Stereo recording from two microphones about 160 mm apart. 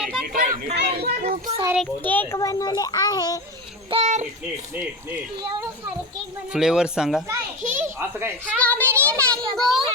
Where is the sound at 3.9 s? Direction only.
45° right (ahead or behind).